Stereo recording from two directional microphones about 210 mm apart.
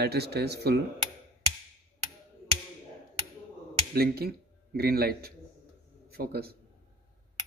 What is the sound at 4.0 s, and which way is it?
A man's voice, 45° right (ahead or behind).